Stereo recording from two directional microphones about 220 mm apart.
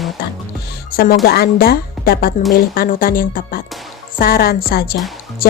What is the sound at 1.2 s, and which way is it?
A woman's voice, 45° left (ahead or behind).